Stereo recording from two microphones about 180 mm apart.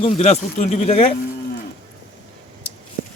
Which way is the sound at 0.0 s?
40° left (ahead or behind).